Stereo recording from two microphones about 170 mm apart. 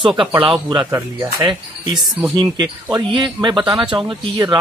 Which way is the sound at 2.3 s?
25° right (ahead or behind).